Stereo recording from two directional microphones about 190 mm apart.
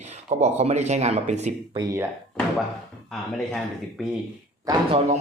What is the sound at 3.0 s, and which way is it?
Speech, 5° left (ahead or behind).